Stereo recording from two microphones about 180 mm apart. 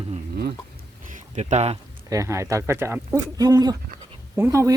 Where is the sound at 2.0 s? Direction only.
20° right (ahead or behind).